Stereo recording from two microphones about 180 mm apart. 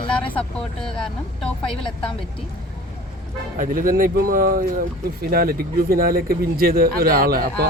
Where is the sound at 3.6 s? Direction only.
50° right (ahead or behind).